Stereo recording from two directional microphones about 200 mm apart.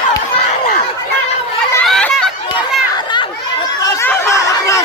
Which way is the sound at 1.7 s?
5° left (ahead or behind).